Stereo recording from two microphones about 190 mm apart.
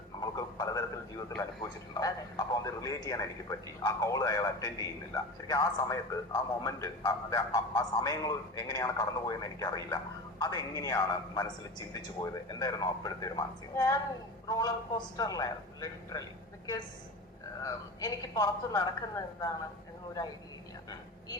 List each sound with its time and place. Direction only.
0.2 s a sound: 20° left (ahead or behind)
1.9 s a man's voice: 20° left (ahead or behind)
17.6 s a man's voice: 20° left (ahead or behind)